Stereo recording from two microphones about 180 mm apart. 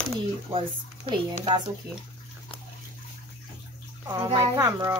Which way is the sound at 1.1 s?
25° right (ahead or behind).